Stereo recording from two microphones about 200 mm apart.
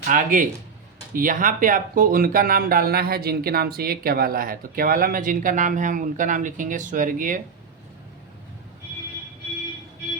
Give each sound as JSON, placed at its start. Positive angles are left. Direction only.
{"t": 0.1, "sound": "a man's voice", "side_deg": -40}